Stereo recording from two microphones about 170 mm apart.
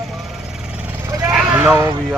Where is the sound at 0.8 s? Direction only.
15° right (ahead or behind).